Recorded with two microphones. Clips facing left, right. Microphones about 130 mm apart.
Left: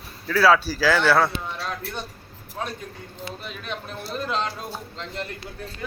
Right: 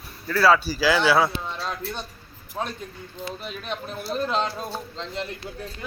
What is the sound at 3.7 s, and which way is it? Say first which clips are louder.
Speech: right 3 dB; 35° right (ahead or behind).